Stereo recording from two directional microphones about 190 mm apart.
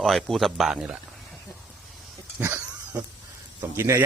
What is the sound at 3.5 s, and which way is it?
Speech, 15° right (ahead or behind).